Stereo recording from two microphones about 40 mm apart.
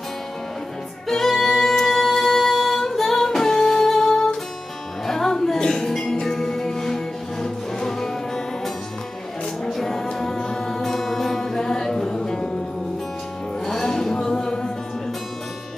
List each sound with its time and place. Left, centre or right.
1.0 s music: centre
9.7 s music: centre
13.7 s music: centre